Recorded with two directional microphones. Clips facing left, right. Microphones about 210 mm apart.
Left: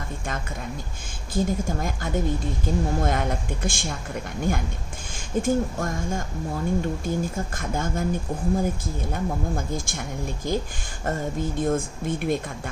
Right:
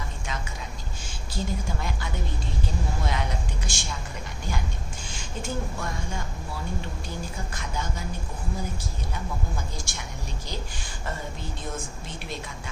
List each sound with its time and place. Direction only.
1.3 s speech: 50° left (ahead or behind)